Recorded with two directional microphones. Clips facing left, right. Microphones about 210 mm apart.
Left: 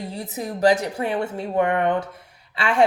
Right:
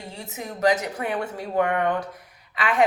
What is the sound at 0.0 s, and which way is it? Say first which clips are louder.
A woman's voice: left 6 dB; 35° left (ahead or behind).